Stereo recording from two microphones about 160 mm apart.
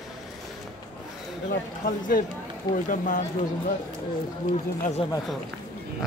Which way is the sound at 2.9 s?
50° left (ahead or behind).